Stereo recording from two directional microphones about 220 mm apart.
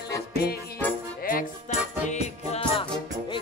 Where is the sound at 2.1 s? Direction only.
30° left (ahead or behind).